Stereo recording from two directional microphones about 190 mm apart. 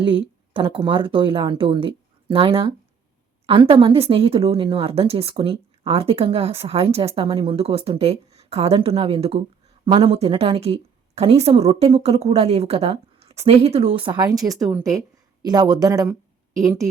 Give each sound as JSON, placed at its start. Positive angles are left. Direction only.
{"t": 0.0, "sound": "a woman's voice", "side_deg": -25}
{"t": 14.5, "sound": "a woman's voice", "side_deg": -5}